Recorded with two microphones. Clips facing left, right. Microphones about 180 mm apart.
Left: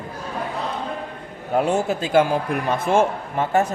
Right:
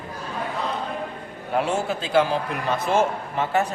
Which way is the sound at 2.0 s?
50° left (ahead or behind).